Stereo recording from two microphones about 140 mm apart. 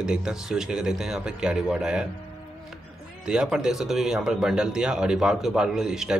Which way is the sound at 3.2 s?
5° right (ahead or behind).